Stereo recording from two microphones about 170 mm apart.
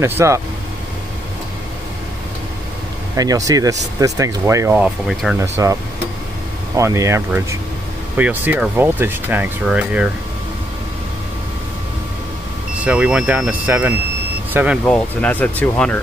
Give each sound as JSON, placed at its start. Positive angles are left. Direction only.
{"t": 0.0, "sound": "speech", "side_deg": -15}
{"t": 3.2, "sound": "speech", "side_deg": -20}
{"t": 5.4, "sound": "speech", "side_deg": -20}
{"t": 12.8, "sound": "speech", "side_deg": -5}
{"t": 14.9, "sound": "speech", "side_deg": 10}